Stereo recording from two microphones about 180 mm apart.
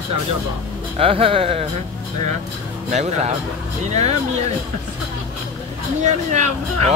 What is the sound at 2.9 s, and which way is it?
Speech, 40° right (ahead or behind).